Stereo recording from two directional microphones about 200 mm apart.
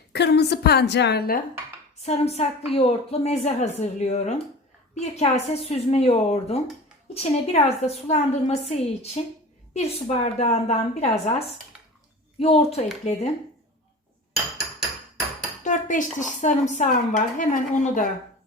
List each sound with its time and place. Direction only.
0.1 s a woman's voice: 55° left (ahead or behind)
2.0 s a woman's voice: 30° left (ahead or behind)
15.6 s a woman's voice: 40° left (ahead or behind)